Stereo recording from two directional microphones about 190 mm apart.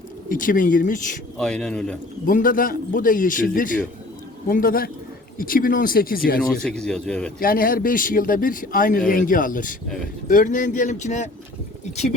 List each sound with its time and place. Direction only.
0.3 s speech: 45° left (ahead or behind)
1.4 s speech: 5° left (ahead or behind)
2.2 s speech: 45° left (ahead or behind)
6.4 s speech: centre (ahead or behind)
7.3 s speech: 50° left (ahead or behind)